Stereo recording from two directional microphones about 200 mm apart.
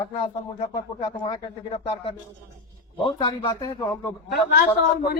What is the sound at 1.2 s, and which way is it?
Speech, 25° left (ahead or behind).